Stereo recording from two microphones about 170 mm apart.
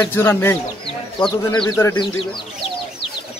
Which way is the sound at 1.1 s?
25° left (ahead or behind).